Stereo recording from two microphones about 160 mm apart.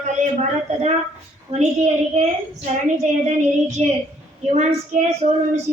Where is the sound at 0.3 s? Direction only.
40° right (ahead or behind).